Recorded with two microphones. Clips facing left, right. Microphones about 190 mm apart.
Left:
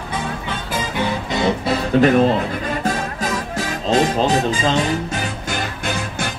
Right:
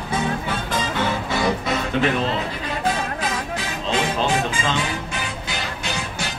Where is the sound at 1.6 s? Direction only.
35° left (ahead or behind).